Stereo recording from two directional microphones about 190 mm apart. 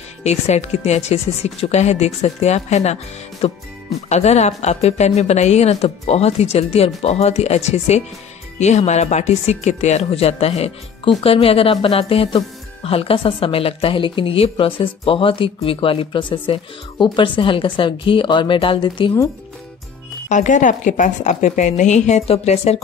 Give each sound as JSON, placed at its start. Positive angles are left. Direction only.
{"t": 0.2, "sound": "a woman's voice", "side_deg": 35}
{"t": 20.2, "sound": "a woman's voice", "side_deg": 40}